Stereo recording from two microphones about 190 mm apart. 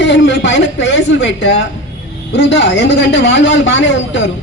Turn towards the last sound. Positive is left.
turn(degrees=75)  # may be behind; listen again after turning